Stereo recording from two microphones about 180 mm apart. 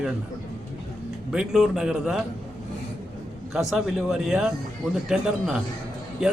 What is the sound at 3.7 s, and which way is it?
Speech, centre (ahead or behind).